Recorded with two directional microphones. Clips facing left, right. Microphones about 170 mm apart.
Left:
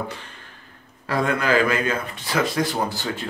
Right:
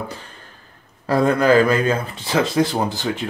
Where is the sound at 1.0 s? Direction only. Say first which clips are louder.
Right 6 dB; 40° right (ahead or behind).